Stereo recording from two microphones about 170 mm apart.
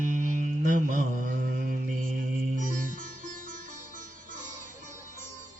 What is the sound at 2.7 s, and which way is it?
Sitar, 50° right (ahead or behind).